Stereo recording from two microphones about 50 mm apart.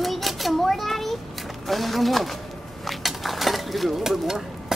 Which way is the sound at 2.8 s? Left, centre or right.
Centre.